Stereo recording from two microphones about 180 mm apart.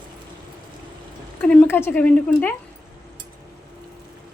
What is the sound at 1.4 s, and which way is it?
A woman's voice, 10° left (ahead or behind).